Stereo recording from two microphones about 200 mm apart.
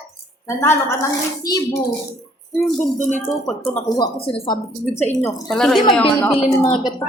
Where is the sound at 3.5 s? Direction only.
10° left (ahead or behind).